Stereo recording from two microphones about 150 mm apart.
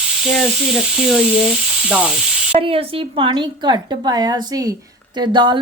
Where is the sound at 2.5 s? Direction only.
40° right (ahead or behind).